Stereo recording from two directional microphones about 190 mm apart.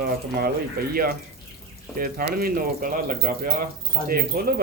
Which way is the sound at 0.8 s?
55° right (ahead or behind).